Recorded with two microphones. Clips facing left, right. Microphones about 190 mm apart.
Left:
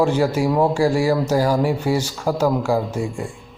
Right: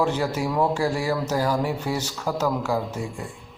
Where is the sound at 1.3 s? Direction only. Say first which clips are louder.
Left 5 dB; 35° left (ahead or behind).